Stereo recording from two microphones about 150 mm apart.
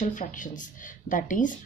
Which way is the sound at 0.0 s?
60° left (ahead or behind).